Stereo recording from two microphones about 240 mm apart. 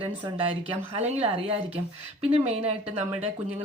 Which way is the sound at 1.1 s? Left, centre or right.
Right.